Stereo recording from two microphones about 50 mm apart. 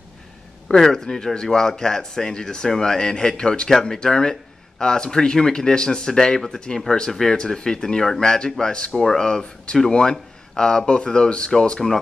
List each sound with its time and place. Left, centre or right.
0.7 s speech: centre